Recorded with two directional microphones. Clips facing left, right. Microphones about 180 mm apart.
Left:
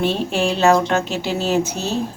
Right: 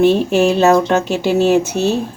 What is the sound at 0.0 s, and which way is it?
Speech, 45° right (ahead or behind).